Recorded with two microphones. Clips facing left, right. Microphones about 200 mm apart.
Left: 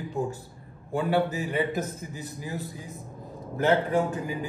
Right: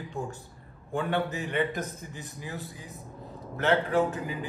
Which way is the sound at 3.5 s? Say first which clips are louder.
Left 2 dB; 15° left (ahead or behind).